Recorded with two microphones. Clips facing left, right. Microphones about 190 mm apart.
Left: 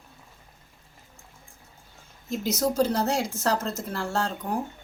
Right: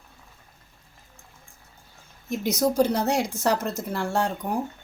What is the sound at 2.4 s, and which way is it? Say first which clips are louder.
A woman's voice: right 2 dB; 15° right (ahead or behind).